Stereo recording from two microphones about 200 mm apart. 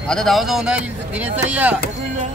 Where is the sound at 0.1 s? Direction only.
Centre (ahead or behind).